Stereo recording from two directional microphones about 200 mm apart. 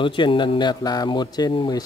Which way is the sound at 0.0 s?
25° left (ahead or behind).